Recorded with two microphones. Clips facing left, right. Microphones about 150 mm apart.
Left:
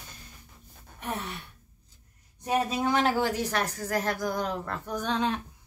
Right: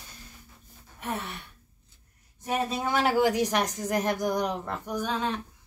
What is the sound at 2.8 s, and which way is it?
Speech, 5° right (ahead or behind).